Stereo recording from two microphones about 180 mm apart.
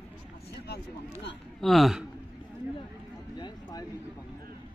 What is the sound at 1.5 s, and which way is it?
Speech, centre (ahead or behind).